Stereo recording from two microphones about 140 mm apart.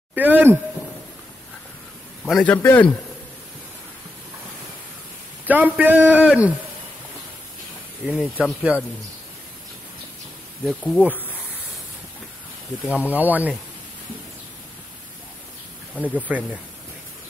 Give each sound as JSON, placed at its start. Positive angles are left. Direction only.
{"t": 0.1, "sound": "speech", "side_deg": -10}
{"t": 2.2, "sound": "a man's voice", "side_deg": 10}
{"t": 5.5, "sound": "speech", "side_deg": -10}
{"t": 8.1, "sound": "speech", "side_deg": -5}
{"t": 10.6, "sound": "insect", "side_deg": 0}
{"t": 13.0, "sound": "speech", "side_deg": -10}
{"t": 16.3, "sound": "speech", "side_deg": -10}